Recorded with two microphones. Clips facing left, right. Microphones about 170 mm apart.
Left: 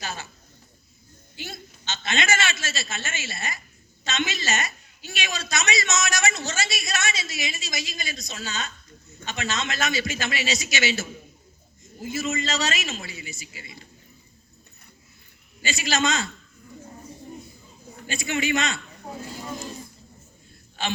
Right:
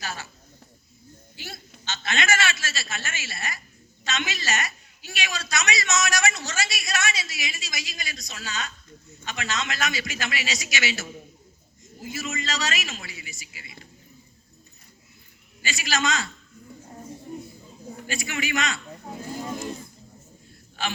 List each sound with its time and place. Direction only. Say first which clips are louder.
0.0 s a sound: left 1 dB; 20° left (ahead or behind)
1.9 s a man's voice: even; 20° left (ahead or behind)
12.0 s a man's voice: left 4 dB; 25° left (ahead or behind)
15.6 s a man's voice: left 2 dB; 25° left (ahead or behind)
18.0 s a man's voice: left 4 dB; 25° left (ahead or behind)